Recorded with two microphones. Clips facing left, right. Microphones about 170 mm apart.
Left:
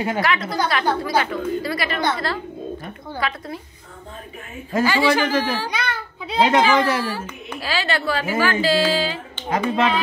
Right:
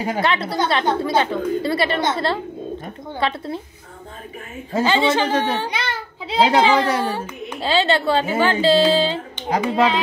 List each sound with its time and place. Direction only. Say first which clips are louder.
0.0 s a child's voice: right 1 dB; 30° right (ahead or behind)
4.7 s a child's voice: even; 25° right (ahead or behind)
9.5 s speech: right 2 dB; 35° right (ahead or behind)